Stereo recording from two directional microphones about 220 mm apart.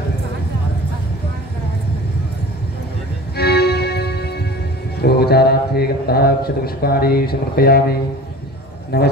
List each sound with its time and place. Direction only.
3.3 s music: 45° left (ahead or behind)
4.9 s a man's voice: 45° left (ahead or behind)